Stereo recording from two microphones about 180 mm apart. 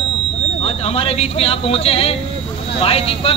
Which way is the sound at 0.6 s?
35° left (ahead or behind).